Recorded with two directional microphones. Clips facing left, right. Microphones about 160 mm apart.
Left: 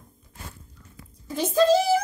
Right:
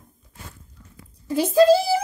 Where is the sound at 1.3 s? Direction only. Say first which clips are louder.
Right 4 dB; 10° right (ahead or behind).